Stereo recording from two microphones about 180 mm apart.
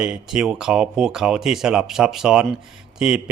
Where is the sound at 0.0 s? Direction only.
5° right (ahead or behind).